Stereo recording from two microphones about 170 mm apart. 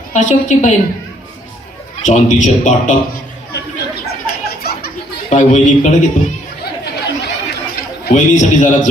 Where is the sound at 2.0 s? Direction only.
45° left (ahead or behind).